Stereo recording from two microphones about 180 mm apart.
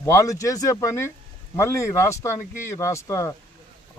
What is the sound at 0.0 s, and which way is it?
Speech, 15° left (ahead or behind).